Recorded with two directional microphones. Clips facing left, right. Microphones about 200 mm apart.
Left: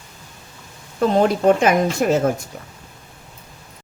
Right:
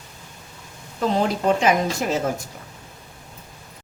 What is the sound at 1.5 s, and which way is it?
Speech, 55° left (ahead or behind).